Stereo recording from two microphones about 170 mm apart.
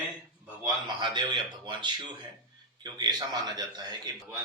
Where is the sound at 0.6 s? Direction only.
25° right (ahead or behind).